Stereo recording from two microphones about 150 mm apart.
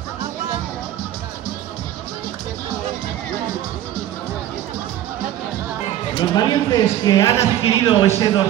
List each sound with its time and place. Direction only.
6.1 s speech: 25° left (ahead or behind)
7.8 s speech: 30° left (ahead or behind)